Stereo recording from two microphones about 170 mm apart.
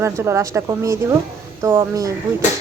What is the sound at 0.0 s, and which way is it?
Speech, 15° right (ahead or behind).